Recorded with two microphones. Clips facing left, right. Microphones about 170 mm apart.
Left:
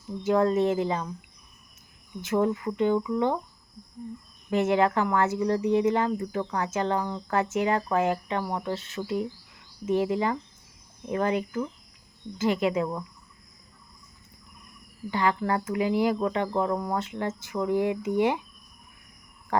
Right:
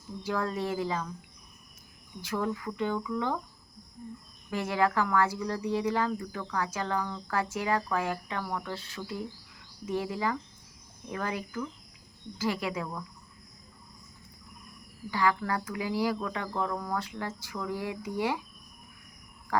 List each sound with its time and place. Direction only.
0.2 s speech: 25° left (ahead or behind)
2.2 s speech: 25° left (ahead or behind)
4.4 s speech: 25° left (ahead or behind)
15.1 s speech: 25° left (ahead or behind)